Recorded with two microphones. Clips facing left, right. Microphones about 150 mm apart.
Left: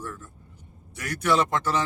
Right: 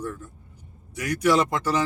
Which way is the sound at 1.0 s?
10° right (ahead or behind).